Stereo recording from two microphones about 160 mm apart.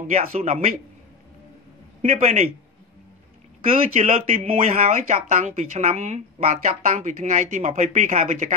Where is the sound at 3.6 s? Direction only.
40° right (ahead or behind).